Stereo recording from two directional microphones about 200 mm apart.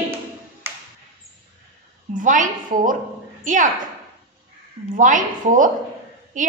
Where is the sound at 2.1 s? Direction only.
40° right (ahead or behind).